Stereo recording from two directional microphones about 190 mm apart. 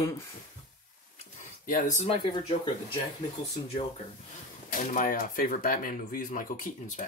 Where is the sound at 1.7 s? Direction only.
40° left (ahead or behind).